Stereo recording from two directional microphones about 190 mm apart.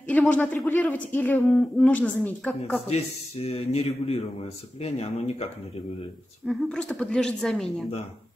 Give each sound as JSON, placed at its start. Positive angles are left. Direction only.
{"t": 0.1, "sound": "speech", "side_deg": 5}
{"t": 2.9, "sound": "speech", "side_deg": 35}
{"t": 6.4, "sound": "a woman's voice", "side_deg": 0}